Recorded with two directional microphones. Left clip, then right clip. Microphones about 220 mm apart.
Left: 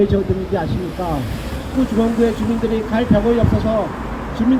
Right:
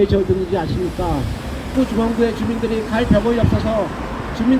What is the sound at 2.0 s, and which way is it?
Speech, 20° right (ahead or behind).